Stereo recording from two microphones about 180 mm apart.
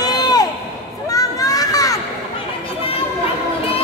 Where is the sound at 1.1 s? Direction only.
20° left (ahead or behind).